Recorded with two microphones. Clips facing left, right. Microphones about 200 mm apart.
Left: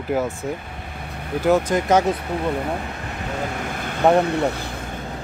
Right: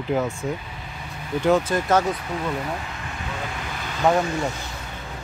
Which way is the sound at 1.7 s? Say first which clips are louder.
Left 3 dB; 20° left (ahead or behind).